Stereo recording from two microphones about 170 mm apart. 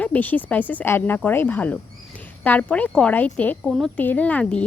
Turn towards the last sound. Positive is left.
turn(degrees=5)  # may be behind; listen again after turning